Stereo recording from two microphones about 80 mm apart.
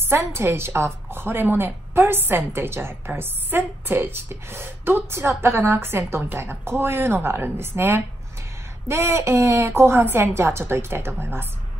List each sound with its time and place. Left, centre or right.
0.0 s a woman's voice: right